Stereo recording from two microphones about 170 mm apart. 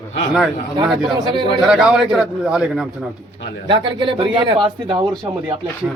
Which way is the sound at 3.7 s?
30° right (ahead or behind).